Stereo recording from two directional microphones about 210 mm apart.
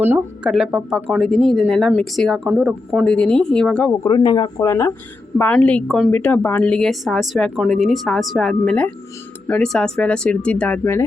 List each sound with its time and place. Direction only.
0.0 s speech: 5° right (ahead or behind)
4.0 s speech: 20° left (ahead or behind)